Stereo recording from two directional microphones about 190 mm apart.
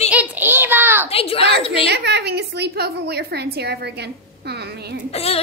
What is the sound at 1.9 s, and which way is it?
A woman's voice, 60° right (ahead or behind).